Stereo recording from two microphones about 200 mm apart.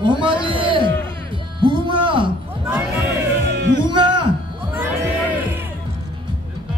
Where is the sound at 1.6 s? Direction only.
25° right (ahead or behind).